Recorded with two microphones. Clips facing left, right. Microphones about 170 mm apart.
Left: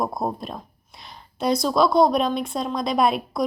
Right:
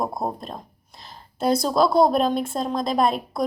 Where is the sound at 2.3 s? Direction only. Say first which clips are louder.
Right 2 dB; 50° right (ahead or behind).